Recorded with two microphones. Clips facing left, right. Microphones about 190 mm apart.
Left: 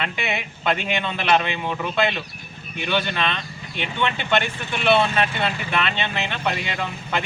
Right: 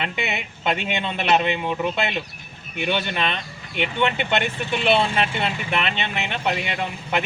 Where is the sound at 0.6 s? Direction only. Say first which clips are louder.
Even; 20° right (ahead or behind).